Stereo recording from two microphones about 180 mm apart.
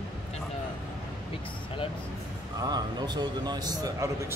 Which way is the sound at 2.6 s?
20° right (ahead or behind).